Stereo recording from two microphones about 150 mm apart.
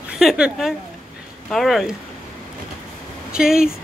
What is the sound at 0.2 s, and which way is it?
Speech, centre (ahead or behind).